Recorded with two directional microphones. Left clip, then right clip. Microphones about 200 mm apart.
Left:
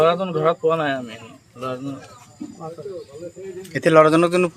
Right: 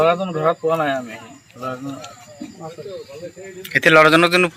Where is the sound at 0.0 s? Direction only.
15° left (ahead or behind).